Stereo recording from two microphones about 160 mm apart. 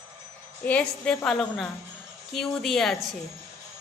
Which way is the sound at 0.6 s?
10° left (ahead or behind).